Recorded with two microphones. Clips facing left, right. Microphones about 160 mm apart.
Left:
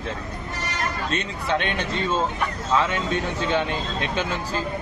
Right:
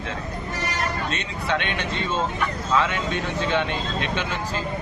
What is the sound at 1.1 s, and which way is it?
Speech, 35° left (ahead or behind).